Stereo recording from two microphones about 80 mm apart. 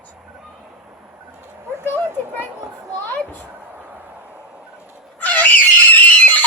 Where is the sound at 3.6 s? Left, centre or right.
Right.